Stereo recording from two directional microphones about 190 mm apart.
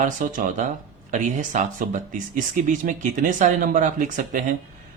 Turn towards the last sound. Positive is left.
turn(degrees=-40)  # may be behind; listen again after turning